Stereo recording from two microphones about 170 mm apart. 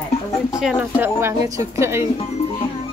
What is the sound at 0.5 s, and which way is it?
Speech, 5° right (ahead or behind).